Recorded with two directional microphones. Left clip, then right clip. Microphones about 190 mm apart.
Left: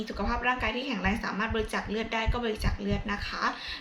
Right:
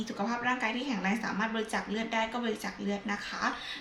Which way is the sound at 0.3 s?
10° right (ahead or behind).